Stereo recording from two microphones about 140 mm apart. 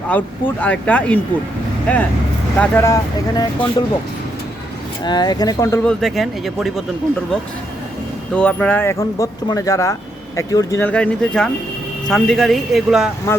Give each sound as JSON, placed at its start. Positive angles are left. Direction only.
{"t": 0.1, "sound": "speech", "side_deg": 10}
{"t": 5.0, "sound": "speech", "side_deg": 30}
{"t": 5.8, "sound": "speech", "side_deg": 5}
{"t": 8.4, "sound": "speech", "side_deg": 10}
{"t": 13.3, "sound": "speech", "side_deg": 20}